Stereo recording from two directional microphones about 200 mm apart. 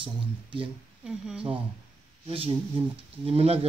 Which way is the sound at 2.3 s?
30° right (ahead or behind).